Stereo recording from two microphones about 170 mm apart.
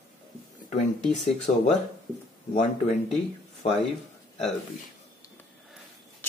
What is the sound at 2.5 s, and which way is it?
Speech, 45° left (ahead or behind).